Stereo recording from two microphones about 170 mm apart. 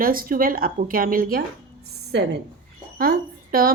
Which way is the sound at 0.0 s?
55° right (ahead or behind).